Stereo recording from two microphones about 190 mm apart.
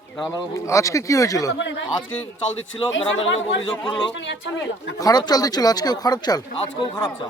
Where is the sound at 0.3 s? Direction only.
15° left (ahead or behind).